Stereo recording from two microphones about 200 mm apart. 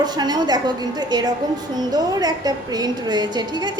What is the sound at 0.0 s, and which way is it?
A woman's voice, 20° right (ahead or behind).